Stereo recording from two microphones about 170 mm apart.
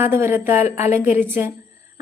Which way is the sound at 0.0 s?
15° right (ahead or behind).